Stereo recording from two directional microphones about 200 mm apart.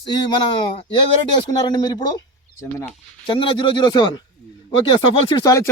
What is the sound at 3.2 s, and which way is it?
Speech, 25° left (ahead or behind).